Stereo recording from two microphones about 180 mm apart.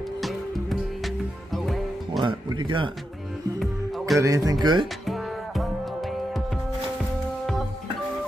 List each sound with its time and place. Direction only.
0.2 s music: centre (ahead or behind)
2.2 s speech: 25° right (ahead or behind)
4.2 s speech: 20° right (ahead or behind)
5.0 s music: centre (ahead or behind)